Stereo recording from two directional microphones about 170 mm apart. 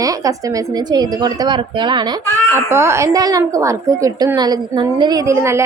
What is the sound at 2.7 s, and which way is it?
A woman's voice, 15° right (ahead or behind).